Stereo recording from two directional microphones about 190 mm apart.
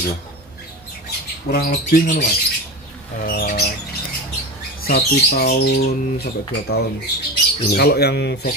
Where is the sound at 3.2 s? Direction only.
50° left (ahead or behind).